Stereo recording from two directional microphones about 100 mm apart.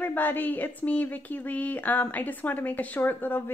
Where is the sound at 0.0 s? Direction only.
20° left (ahead or behind).